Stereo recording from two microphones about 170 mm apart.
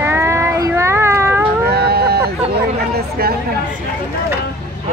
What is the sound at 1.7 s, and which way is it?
Speech, 70° right (ahead or behind).